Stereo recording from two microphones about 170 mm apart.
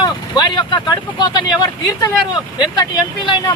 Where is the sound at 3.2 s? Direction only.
25° left (ahead or behind).